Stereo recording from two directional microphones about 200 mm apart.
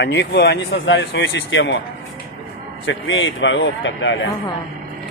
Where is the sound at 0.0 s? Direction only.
60° left (ahead or behind).